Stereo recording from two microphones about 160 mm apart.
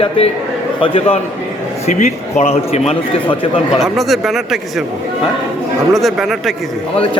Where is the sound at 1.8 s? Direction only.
45° left (ahead or behind).